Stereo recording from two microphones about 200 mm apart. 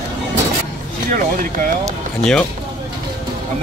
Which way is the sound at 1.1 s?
40° right (ahead or behind).